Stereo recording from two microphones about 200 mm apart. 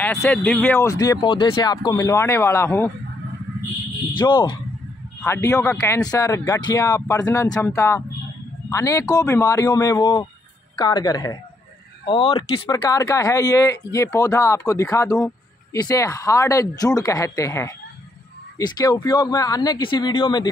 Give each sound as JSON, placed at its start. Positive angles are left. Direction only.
{"t": 0.0, "sound": "speech", "side_deg": 10}
{"t": 0.7, "sound": "speech", "side_deg": 15}
{"t": 4.2, "sound": "speech", "side_deg": 20}